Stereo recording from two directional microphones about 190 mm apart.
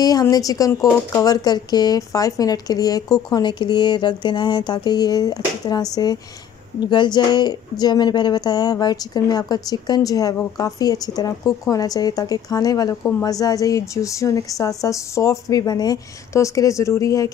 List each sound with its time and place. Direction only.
0.0 s a woman's voice: 20° left (ahead or behind)